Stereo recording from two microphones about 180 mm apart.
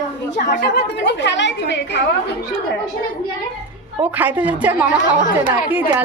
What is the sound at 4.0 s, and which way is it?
A woman's voice, 10° right (ahead or behind).